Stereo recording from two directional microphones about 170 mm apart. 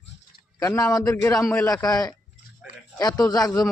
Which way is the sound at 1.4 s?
5° left (ahead or behind).